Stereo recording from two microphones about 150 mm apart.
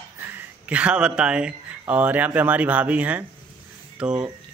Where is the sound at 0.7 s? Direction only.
5° right (ahead or behind).